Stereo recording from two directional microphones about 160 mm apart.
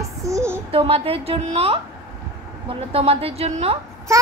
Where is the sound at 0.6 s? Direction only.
35° right (ahead or behind).